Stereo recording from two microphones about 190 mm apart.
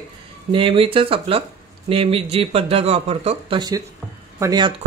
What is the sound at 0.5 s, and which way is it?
Speech, 25° right (ahead or behind).